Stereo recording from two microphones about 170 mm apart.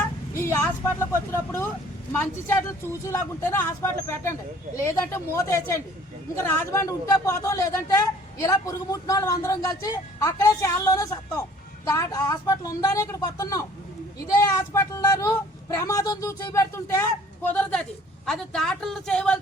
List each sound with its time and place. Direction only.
0.9 s speech: 15° left (ahead or behind)